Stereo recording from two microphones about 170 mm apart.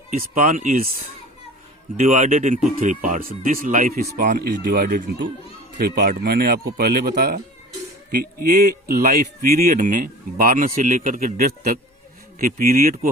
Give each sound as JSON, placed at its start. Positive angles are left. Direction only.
{"t": 0.1, "sound": "speech", "side_deg": -55}
{"t": 2.0, "sound": "speech", "side_deg": -45}